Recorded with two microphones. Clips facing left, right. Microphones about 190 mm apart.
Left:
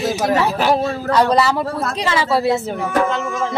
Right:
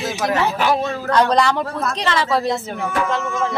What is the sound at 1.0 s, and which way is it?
A man's voice, 5° left (ahead or behind).